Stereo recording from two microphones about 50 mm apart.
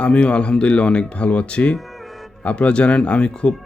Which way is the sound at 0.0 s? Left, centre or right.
Left.